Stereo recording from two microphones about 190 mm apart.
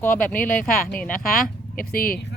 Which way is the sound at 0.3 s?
45° left (ahead or behind).